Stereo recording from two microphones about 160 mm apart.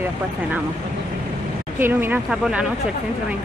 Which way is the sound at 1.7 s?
15° right (ahead or behind).